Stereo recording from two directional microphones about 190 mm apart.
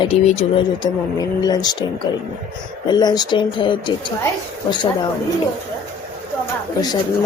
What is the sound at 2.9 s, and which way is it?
Speech, 20° left (ahead or behind).